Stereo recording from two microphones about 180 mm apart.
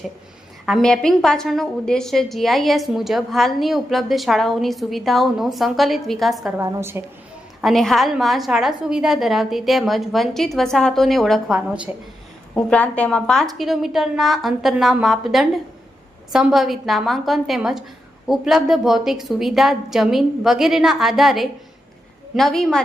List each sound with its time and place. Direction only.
0.6 s a woman's voice: centre (ahead or behind)
6.6 s a woman's voice: 15° right (ahead or behind)
7.6 s a woman's voice: centre (ahead or behind)
12.5 s a woman's voice: 5° left (ahead or behind)